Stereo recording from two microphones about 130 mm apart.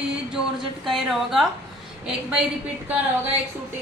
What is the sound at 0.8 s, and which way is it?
Speech, centre (ahead or behind).